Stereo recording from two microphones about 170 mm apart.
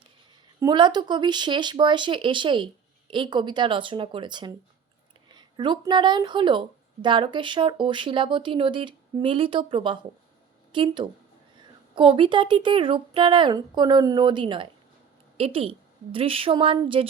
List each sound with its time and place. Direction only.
0.6 s a woman's voice: 25° right (ahead or behind)